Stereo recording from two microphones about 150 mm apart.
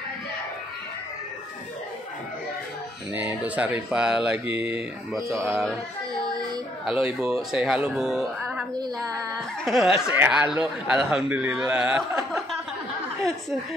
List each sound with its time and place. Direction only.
3.1 s speech: 10° right (ahead or behind)
6.9 s speech: 5° right (ahead or behind)
8.7 s female singing: 25° right (ahead or behind)
9.3 s speech: centre (ahead or behind)